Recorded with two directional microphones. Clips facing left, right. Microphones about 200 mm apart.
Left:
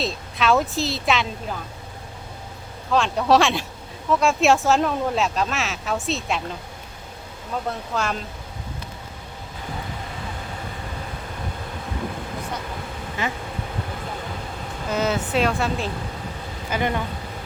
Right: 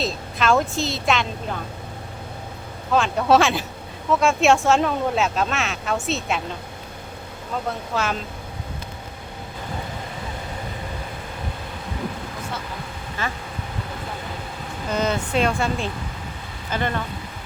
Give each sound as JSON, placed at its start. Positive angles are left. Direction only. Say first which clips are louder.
{"t": 0.0, "sound": "speech", "louder": "even", "side_deg": 0}
{"t": 2.9, "sound": "speech", "louder": "right 1 dB", "side_deg": 0}
{"t": 7.9, "sound": "speech", "louder": "right 1 dB", "side_deg": 0}
{"t": 13.2, "sound": "speech", "louder": "left 2 dB", "side_deg": 15}
{"t": 14.8, "sound": "speech", "louder": "even", "side_deg": 5}
{"t": 16.7, "sound": "speech", "louder": "left 1 dB", "side_deg": 15}